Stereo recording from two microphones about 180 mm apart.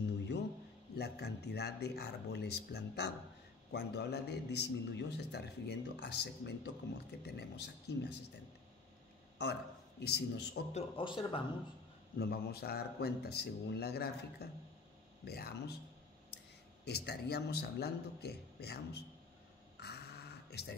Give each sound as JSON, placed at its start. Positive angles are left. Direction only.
{"t": 0.9, "sound": "a man's voice", "side_deg": 65}
{"t": 9.4, "sound": "speech", "side_deg": 65}
{"t": 10.7, "sound": "speech", "side_deg": 35}
{"t": 12.2, "sound": "speech", "side_deg": 60}
{"t": 16.8, "sound": "speech", "side_deg": 65}
{"t": 19.8, "sound": "a sound", "side_deg": 65}